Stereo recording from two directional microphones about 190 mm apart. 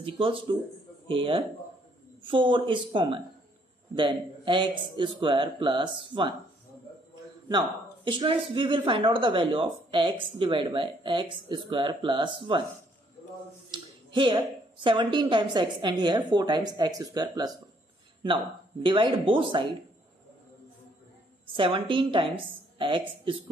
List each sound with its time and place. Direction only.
0.0 s speech: 30° right (ahead or behind)
7.4 s speech: 25° right (ahead or behind)
13.7 s speech: 25° right (ahead or behind)
21.5 s speech: 25° right (ahead or behind)